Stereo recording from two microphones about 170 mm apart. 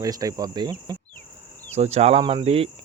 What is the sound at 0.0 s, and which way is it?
Cricket, 20° right (ahead or behind).